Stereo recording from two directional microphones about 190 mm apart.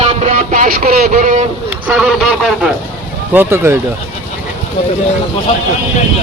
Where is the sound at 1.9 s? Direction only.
5° right (ahead or behind).